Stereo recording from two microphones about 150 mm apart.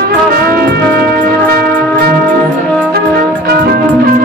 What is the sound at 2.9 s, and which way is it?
Music, 90° right.